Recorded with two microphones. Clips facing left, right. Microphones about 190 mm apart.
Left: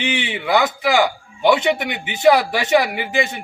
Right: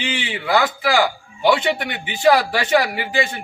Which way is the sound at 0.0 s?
20° left (ahead or behind).